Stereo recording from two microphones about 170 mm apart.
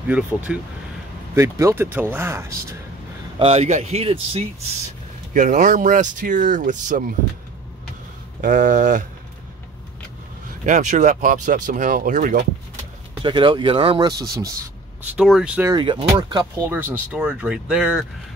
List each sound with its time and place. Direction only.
0.1 s speech: 10° right (ahead or behind)
3.3 s speech: 35° right (ahead or behind)
5.3 s speech: 45° right (ahead or behind)
8.4 s speech: 50° right (ahead or behind)
10.6 s speech: 45° right (ahead or behind)
13.2 s speech: 30° right (ahead or behind)
15.1 s speech: 5° right (ahead or behind)
15.7 s speech: 30° right (ahead or behind); by 18.0 s 5° right (ahead or behind)